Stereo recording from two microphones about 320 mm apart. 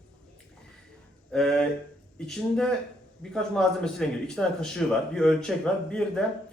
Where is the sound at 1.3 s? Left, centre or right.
Centre.